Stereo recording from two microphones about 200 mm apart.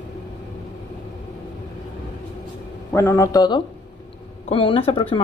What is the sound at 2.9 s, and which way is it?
A man's voice, 15° left (ahead or behind).